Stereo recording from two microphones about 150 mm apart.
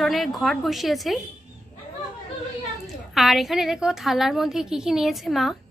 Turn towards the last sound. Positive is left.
turn(degrees=0)  # may be behind; listen again after turning